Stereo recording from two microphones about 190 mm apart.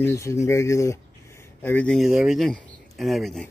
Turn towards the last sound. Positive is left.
turn(degrees=0)  # may be behind; listen again after turning